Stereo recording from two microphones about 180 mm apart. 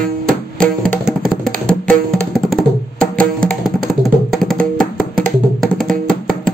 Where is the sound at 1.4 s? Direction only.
5° left (ahead or behind).